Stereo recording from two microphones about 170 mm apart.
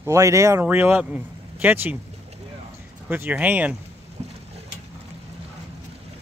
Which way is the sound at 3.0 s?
10° right (ahead or behind).